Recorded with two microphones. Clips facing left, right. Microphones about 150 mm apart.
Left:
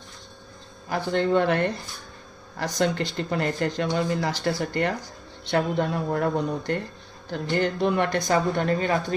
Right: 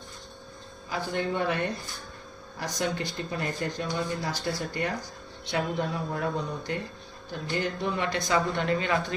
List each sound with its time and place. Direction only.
0.9 s speech: 65° left (ahead or behind); by 9.1 s 40° left (ahead or behind)